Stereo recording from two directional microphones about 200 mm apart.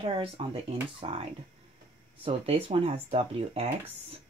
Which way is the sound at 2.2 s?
30° right (ahead or behind).